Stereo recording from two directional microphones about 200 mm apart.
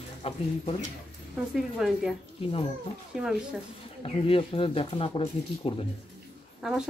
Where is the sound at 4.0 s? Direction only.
25° left (ahead or behind).